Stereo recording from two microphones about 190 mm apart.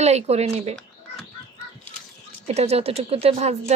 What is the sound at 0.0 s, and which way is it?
Speech, 35° right (ahead or behind).